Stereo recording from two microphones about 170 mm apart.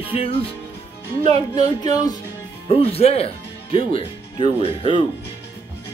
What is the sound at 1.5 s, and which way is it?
Speech, 25° left (ahead or behind).